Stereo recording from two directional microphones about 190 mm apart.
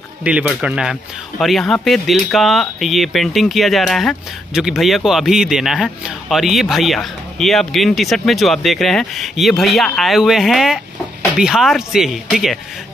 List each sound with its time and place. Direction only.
0.2 s speech: 5° right (ahead or behind)